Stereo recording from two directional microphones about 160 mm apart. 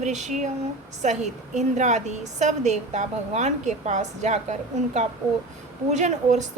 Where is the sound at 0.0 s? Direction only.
45° right (ahead or behind).